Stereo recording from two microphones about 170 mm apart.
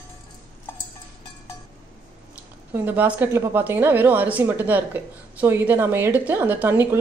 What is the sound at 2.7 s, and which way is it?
Speech, 10° right (ahead or behind).